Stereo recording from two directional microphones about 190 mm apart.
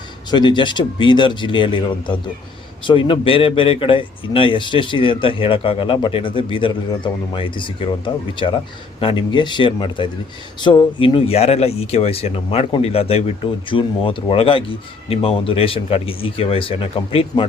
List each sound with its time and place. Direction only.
0.3 s a man's voice: 25° left (ahead or behind)